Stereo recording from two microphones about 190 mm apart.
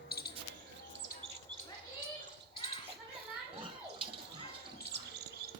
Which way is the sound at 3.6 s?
25° right (ahead or behind).